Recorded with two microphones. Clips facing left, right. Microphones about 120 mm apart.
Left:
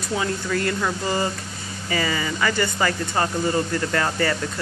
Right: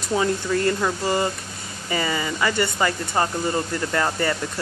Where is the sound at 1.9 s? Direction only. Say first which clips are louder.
Even; 25° right (ahead or behind).